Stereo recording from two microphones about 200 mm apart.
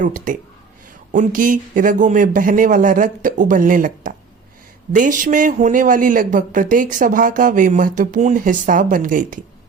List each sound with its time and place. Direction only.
0.0 s speech: 45° right (ahead or behind)